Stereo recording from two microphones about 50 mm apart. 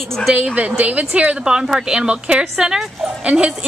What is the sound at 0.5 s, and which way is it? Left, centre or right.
A woman's voice, right.